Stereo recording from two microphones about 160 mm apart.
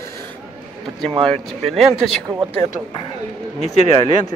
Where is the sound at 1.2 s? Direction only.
5° left (ahead or behind).